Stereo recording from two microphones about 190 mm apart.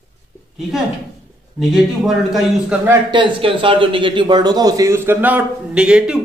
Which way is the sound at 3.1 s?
25° right (ahead or behind).